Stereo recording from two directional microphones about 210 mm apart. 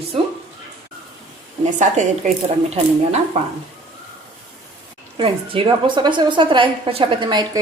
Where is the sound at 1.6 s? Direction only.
35° right (ahead or behind).